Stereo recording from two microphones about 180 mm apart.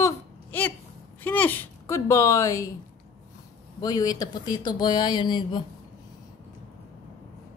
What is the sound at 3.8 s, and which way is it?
Speech, 20° left (ahead or behind).